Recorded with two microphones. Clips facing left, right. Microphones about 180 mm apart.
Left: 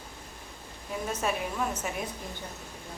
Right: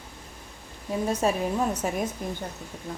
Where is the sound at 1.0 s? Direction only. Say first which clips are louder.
Right 6 dB; 35° right (ahead or behind).